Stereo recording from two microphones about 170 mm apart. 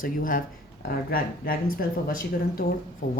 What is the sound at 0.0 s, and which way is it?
A woman's voice, 55° left (ahead or behind).